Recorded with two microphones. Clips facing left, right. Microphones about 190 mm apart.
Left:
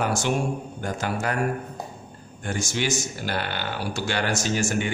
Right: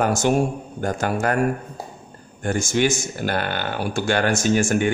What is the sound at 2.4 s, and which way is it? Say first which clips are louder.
Speech: right 7 dB; 50° right (ahead or behind).